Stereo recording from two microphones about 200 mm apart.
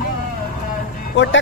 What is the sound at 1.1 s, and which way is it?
Music, 70° left (ahead or behind).